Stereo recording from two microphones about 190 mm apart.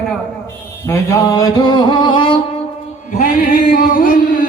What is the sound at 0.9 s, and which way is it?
Music, 20° left (ahead or behind).